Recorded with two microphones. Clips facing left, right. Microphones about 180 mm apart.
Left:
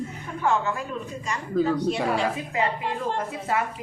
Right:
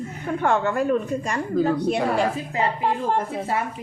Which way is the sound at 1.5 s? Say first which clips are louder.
Right 1 dB; 5° right (ahead or behind).